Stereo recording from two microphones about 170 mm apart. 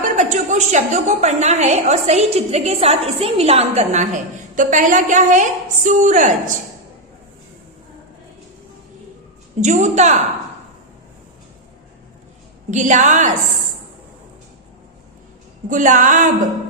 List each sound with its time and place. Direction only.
0.2 s a woman's voice: 45° right (ahead or behind)
9.6 s a woman's voice: 45° right (ahead or behind)
12.7 s a woman's voice: 45° right (ahead or behind)
15.7 s a woman's voice: 50° right (ahead or behind)